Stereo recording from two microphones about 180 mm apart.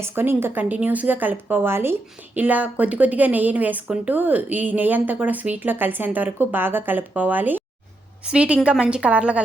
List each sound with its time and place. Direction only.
0.0 s a woman's voice: 10° right (ahead or behind)